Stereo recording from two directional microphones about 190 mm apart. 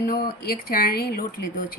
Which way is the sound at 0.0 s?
55° left (ahead or behind).